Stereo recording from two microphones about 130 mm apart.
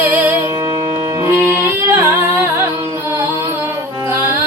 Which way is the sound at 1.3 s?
15° right (ahead or behind).